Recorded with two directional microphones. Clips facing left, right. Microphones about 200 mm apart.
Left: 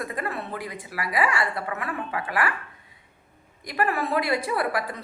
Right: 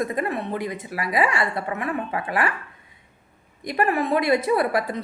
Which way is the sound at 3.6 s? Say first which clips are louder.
Right 4 dB; 20° right (ahead or behind).